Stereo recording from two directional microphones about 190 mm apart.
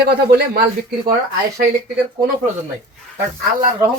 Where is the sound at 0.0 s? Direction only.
55° right (ahead or behind).